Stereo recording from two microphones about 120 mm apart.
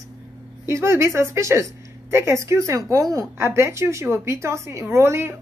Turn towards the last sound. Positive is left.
turn(degrees=-20)  # may be behind; listen again after turning